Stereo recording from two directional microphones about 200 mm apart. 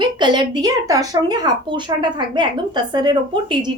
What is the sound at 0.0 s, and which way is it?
Speech, 20° right (ahead or behind).